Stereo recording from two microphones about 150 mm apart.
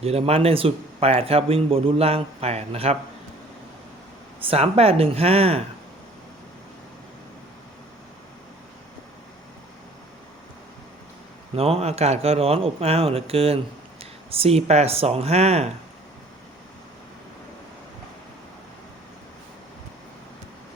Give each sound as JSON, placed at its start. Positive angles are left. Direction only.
{"t": 0.0, "sound": "speech", "side_deg": -45}
{"t": 4.4, "sound": "speech", "side_deg": -40}
{"t": 11.5, "sound": "speech", "side_deg": -40}